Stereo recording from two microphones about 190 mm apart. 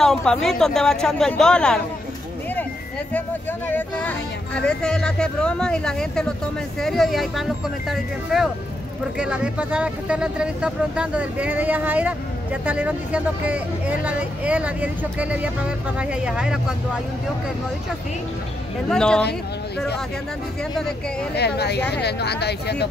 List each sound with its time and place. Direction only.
0.0 s speech: 5° left (ahead or behind)
3.1 s speech: 10° left (ahead or behind)
18.9 s speech: 5° left (ahead or behind)
21.4 s speech: 60° left (ahead or behind)